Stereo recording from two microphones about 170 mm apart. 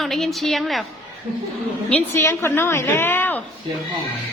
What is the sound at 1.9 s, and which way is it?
A woman's voice, 10° left (ahead or behind).